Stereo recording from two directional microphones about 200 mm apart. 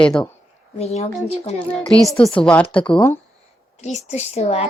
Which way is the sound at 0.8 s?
30° left (ahead or behind).